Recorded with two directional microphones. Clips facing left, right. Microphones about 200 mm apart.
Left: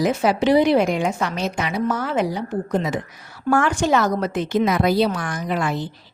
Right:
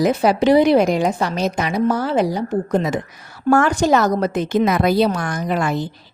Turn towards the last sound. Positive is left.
turn(degrees=-45)  # may be behind; listen again after turning